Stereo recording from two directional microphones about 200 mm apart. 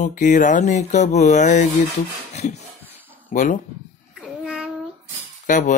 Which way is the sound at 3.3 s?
40° left (ahead or behind).